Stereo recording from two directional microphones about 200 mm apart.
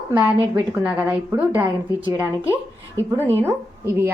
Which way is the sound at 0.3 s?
10° right (ahead or behind).